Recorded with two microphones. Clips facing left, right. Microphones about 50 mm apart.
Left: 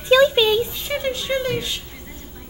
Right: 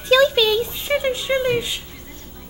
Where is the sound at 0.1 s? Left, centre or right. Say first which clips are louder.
Left 1 dB; left.